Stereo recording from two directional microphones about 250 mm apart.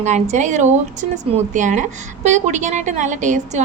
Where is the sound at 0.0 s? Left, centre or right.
Right.